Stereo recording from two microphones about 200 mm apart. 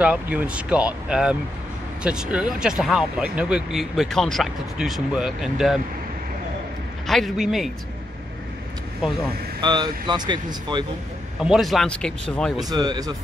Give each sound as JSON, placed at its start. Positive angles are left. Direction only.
{"t": 0.0, "sound": "speech", "side_deg": -5}
{"t": 7.1, "sound": "speech", "side_deg": 0}
{"t": 9.6, "sound": "speech", "side_deg": -20}
{"t": 11.4, "sound": "speech", "side_deg": 0}
{"t": 12.6, "sound": "speech", "side_deg": -20}